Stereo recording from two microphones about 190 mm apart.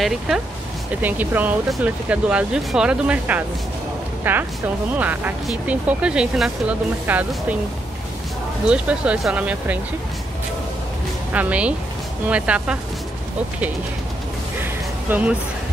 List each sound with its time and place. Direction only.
1.0 s speech: 10° right (ahead or behind)
8.6 s speech: 5° right (ahead or behind)
11.3 s speech: 5° right (ahead or behind)
14.6 s music: 10° right (ahead or behind)